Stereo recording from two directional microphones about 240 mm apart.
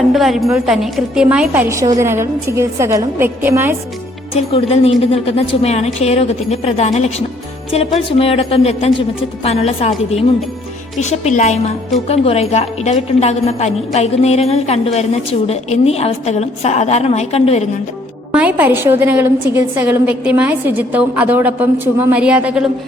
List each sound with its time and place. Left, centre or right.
0.1 s a woman's voice: centre
4.4 s a woman's voice: left
18.3 s a woman's voice: centre